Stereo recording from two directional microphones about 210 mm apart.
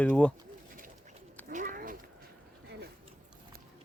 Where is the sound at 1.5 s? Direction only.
40° right (ahead or behind).